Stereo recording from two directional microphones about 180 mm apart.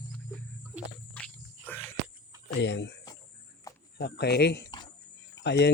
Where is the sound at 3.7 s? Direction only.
20° left (ahead or behind).